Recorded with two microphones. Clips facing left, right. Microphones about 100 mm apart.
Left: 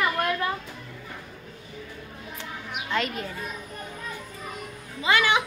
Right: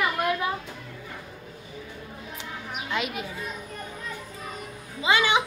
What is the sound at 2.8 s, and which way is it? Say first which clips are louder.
Speech: left 2 dB; 10° right (ahead or behind).